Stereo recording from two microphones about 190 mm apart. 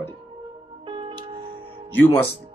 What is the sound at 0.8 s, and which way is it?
Music, 25° right (ahead or behind).